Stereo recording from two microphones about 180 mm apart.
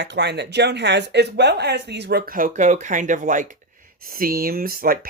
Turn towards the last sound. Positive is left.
turn(degrees=-55)  # may be behind; listen again after turning